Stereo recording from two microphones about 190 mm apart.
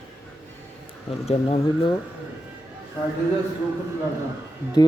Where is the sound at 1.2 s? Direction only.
35° left (ahead or behind).